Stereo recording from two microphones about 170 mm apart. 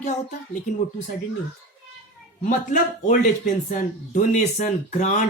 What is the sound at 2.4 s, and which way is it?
Speech, 50° left (ahead or behind).